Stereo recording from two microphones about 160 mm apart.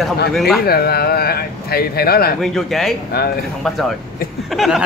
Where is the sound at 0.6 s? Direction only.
80° left.